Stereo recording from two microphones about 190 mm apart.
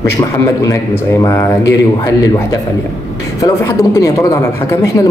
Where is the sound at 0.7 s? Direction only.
15° left (ahead or behind).